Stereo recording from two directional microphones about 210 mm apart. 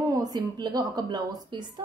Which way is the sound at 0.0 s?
15° right (ahead or behind).